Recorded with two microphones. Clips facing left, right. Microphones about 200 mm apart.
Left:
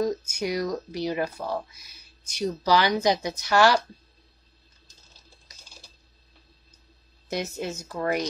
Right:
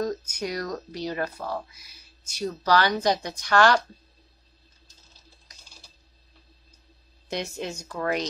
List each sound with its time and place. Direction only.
0.0 s speech: 10° left (ahead or behind)
7.2 s a woman's voice: 5° left (ahead or behind)